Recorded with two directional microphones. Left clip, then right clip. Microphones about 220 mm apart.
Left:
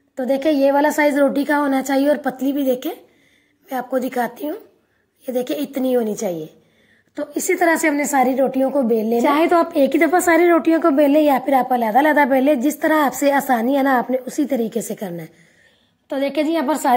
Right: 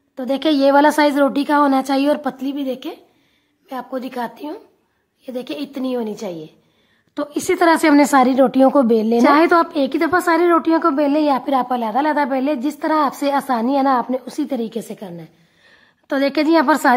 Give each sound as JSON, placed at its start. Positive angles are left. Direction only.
{"t": 0.1, "sound": "a sound", "side_deg": 0}
{"t": 0.4, "sound": "a woman's voice", "side_deg": -10}
{"t": 2.3, "sound": "a woman's voice", "side_deg": 5}
{"t": 7.4, "sound": "a woman's voice", "side_deg": -10}
{"t": 15.0, "sound": "a woman's voice", "side_deg": 15}
{"t": 16.1, "sound": "a woman's voice", "side_deg": -15}